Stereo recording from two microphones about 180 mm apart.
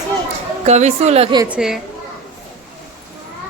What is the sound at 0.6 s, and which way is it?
Speech, 40° right (ahead or behind).